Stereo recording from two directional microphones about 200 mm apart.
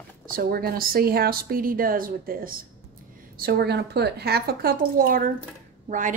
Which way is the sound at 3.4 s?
55° right (ahead or behind).